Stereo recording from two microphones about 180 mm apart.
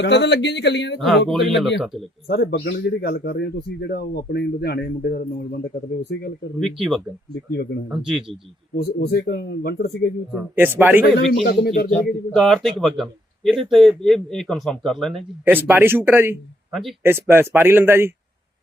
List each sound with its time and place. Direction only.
0.0 s a man's voice: 70° left (ahead or behind)
0.9 s a man's voice: centre (ahead or behind)
2.2 s a man's voice: 55° left (ahead or behind)
6.6 s a man's voice: centre (ahead or behind)
8.7 s a man's voice: 60° left (ahead or behind)
10.5 s speech: 10° right (ahead or behind)
11.0 s a man's voice: 60° left (ahead or behind)
11.9 s a man's voice: 5° left (ahead or behind)
15.4 s speech: 10° right (ahead or behind)